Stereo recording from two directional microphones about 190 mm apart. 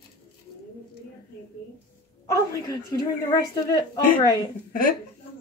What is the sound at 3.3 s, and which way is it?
Speech, 20° left (ahead or behind).